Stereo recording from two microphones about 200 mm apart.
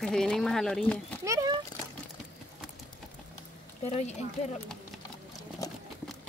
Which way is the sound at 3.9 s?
30° left (ahead or behind).